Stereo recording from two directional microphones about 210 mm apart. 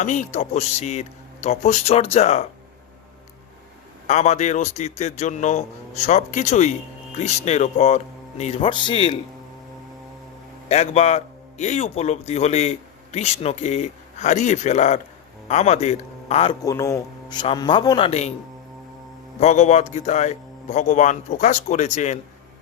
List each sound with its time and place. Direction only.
0.0 s a man's voice: 35° left (ahead or behind)
4.0 s a man's voice: 35° left (ahead or behind)
10.7 s a man's voice: 30° left (ahead or behind)
16.6 s a man's voice: 15° left (ahead or behind); by 18.3 s 30° left (ahead or behind)
19.4 s a man's voice: 35° left (ahead or behind)